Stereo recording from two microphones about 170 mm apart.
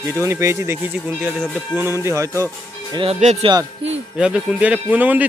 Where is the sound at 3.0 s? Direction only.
40° right (ahead or behind).